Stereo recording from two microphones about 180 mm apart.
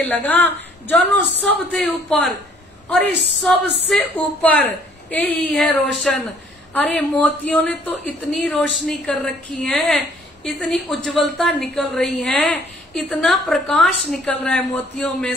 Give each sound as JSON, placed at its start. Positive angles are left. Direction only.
{"t": 0.0, "sound": "speech", "side_deg": 10}
{"t": 3.6, "sound": "speech", "side_deg": -70}
{"t": 4.1, "sound": "a woman's voice", "side_deg": 10}